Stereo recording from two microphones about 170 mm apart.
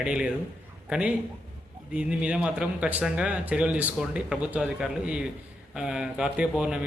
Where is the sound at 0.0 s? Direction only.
5° right (ahead or behind).